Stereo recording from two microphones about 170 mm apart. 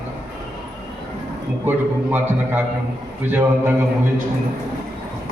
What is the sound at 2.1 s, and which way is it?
A man's voice, 10° right (ahead or behind).